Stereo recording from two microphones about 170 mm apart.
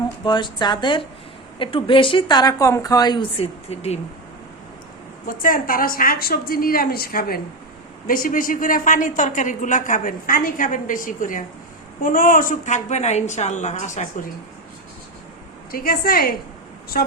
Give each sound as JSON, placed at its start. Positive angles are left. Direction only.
{"t": 0.3, "sound": "speech", "side_deg": 25}
{"t": 5.3, "sound": "a woman's voice", "side_deg": 55}
{"t": 15.7, "sound": "a woman's voice", "side_deg": 60}